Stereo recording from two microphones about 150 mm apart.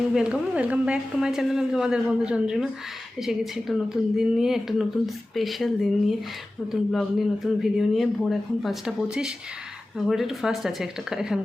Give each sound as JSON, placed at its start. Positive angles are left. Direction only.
{"t": 0.1, "sound": "a woman's voice", "side_deg": -5}